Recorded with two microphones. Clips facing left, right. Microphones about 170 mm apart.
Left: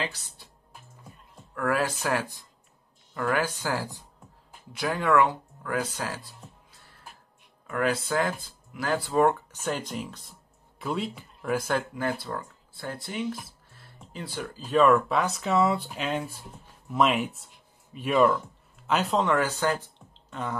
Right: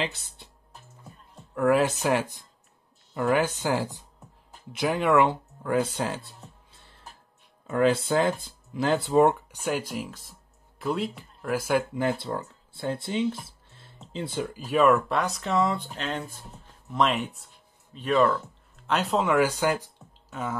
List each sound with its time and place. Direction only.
0.0 s speech: 25° right (ahead or behind)
1.5 s speech: 20° right (ahead or behind); by 11.8 s 5° right (ahead or behind)
11.9 s speech: 25° right (ahead or behind); by 20.5 s 5° right (ahead or behind)